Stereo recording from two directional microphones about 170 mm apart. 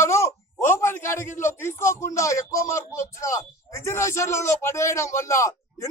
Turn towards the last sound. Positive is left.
turn(degrees=20)  # may be behind; listen again after turning